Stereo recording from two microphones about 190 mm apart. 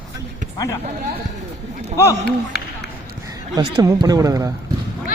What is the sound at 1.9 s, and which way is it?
Speech, 15° left (ahead or behind).